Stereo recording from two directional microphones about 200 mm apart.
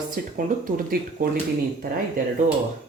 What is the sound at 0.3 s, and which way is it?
Speech, 45° right (ahead or behind).